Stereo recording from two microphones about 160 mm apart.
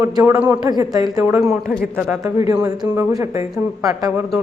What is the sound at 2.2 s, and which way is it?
A woman's voice, 20° right (ahead or behind).